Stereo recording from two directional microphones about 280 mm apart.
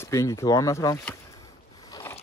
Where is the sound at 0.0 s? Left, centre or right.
Centre.